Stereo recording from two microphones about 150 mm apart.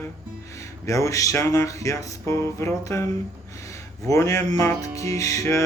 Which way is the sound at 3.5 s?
20° left (ahead or behind).